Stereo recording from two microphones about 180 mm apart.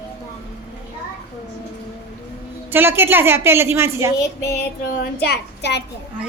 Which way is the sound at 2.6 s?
10° right (ahead or behind).